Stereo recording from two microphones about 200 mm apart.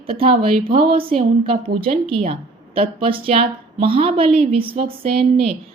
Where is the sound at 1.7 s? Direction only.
30° right (ahead or behind).